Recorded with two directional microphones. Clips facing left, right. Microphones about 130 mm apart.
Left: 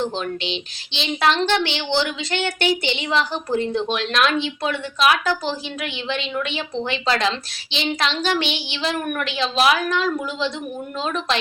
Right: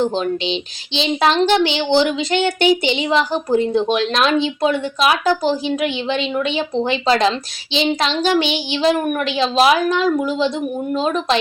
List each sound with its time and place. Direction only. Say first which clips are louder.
0.0 s speech: right 6 dB; 20° right (ahead or behind)